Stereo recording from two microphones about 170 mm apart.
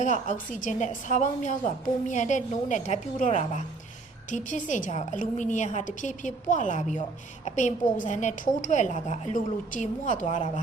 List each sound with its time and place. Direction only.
0.0 s a woman's voice: 45° left (ahead or behind)